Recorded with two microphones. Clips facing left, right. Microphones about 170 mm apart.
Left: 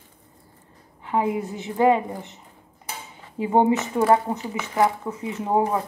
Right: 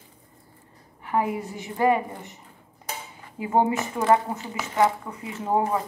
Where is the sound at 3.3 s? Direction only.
20° left (ahead or behind).